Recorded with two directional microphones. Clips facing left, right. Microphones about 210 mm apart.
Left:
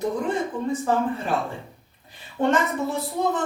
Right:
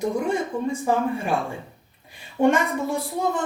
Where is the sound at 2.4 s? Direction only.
10° right (ahead or behind).